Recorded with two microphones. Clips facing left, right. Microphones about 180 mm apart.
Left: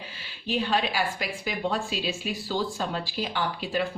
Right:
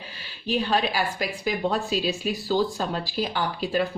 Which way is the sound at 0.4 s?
40° right (ahead or behind).